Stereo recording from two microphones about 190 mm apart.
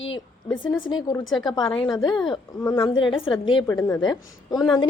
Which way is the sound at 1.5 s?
20° left (ahead or behind).